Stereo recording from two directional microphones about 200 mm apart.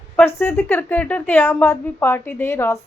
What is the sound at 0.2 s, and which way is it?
A woman's voice, 10° left (ahead or behind).